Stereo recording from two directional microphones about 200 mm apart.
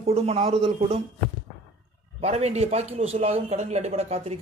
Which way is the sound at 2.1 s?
30° right (ahead or behind).